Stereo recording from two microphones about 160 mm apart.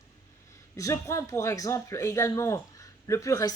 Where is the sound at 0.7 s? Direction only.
20° left (ahead or behind).